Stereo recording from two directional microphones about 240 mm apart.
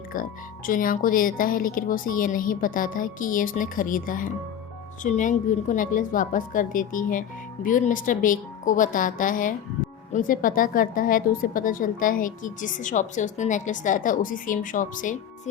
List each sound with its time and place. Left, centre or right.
0.1 s a woman's voice: left